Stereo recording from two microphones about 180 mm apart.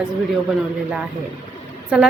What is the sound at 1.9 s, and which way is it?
Speech, 5° right (ahead or behind).